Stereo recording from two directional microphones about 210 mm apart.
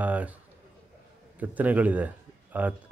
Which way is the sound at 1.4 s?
5° right (ahead or behind).